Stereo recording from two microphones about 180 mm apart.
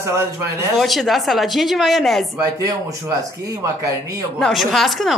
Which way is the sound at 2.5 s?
20° right (ahead or behind).